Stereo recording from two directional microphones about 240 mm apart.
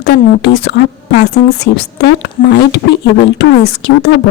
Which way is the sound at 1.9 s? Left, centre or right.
Left.